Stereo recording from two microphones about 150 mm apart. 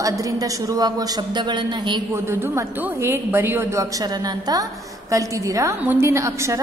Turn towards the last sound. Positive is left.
turn(degrees=-20)  # may be behind; listen again after turning